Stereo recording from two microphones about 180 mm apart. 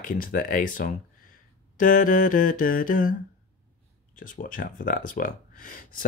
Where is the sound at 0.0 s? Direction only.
50° left (ahead or behind).